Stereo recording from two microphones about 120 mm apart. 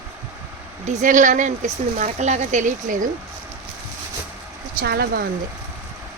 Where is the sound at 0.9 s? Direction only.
85° right.